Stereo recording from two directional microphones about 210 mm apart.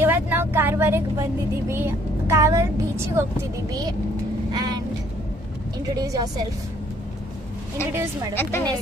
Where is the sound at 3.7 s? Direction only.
20° right (ahead or behind).